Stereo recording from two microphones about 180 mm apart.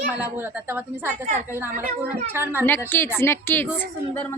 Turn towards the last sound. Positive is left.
turn(degrees=10)  # may be behind; listen again after turning